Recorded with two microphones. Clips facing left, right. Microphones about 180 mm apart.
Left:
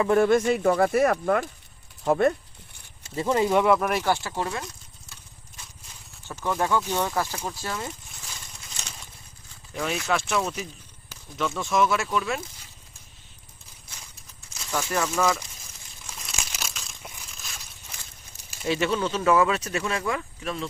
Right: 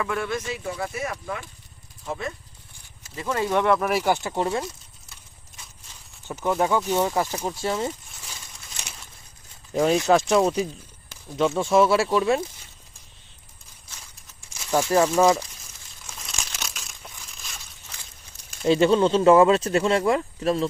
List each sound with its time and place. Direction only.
0.0 s speech: 40° left (ahead or behind); by 2.3 s 60° left (ahead or behind)
3.0 s speech: 25° left (ahead or behind)
3.5 s speech: 5° left (ahead or behind); by 4.6 s 25° right (ahead or behind)
6.2 s speech: 15° right (ahead or behind)
9.7 s speech: 35° right (ahead or behind)
14.7 s speech: 30° right (ahead or behind)
16.3 s crumpling: 5° left (ahead or behind)
18.6 s speech: 30° right (ahead or behind)